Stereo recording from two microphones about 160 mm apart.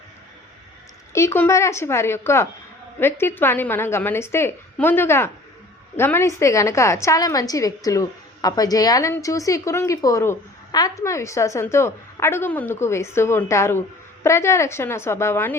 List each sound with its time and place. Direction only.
1.1 s a woman's voice: 15° left (ahead or behind)